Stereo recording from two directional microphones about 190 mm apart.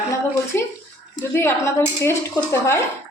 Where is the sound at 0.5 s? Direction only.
10° left (ahead or behind).